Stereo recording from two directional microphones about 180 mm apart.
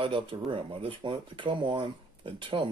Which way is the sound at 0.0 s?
30° right (ahead or behind).